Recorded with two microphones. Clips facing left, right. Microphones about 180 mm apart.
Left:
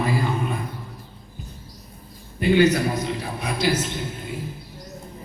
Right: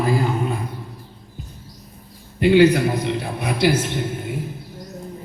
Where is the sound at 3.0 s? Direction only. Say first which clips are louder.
Right 4 dB; 65° right (ahead or behind).